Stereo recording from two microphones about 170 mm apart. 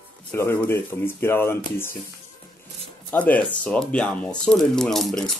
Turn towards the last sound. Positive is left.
turn(degrees=0)  # may be behind; listen again after turning